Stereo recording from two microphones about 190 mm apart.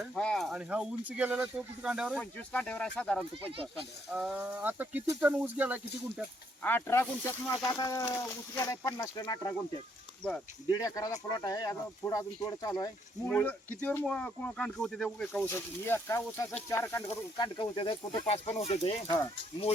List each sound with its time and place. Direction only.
0.0 s speech: 5° left (ahead or behind)
2.5 s speech: 5° left (ahead or behind)
4.1 s speech: 5° right (ahead or behind)
6.6 s speech: 10° left (ahead or behind)
10.7 s speech: 20° left (ahead or behind)
13.3 s speech: 10° left (ahead or behind); by 18.8 s 35° left (ahead or behind)
19.0 s speech: 20° left (ahead or behind)